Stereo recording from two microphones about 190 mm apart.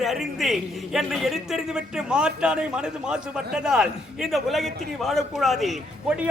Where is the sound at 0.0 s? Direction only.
Centre (ahead or behind).